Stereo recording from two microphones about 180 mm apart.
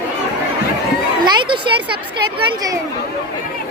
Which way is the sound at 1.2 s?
25° right (ahead or behind).